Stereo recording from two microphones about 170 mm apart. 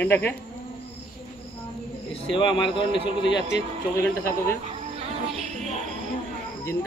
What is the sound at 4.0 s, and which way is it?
Speech, 15° left (ahead or behind).